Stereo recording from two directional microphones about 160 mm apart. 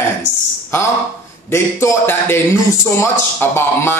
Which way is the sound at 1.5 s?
15° left (ahead or behind).